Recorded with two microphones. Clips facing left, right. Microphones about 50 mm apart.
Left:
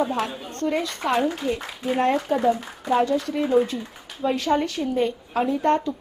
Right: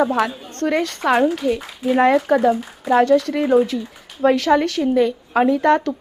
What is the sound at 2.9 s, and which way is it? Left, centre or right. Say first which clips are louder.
A woman's voice: right 6 dB; right.